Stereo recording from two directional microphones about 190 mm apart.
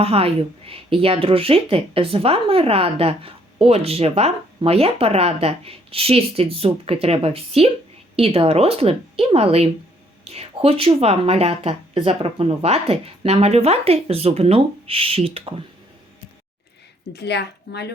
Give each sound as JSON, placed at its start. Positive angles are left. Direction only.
{"t": 0.0, "sound": "a woman's voice", "side_deg": -30}
{"t": 17.1, "sound": "a woman's voice", "side_deg": 60}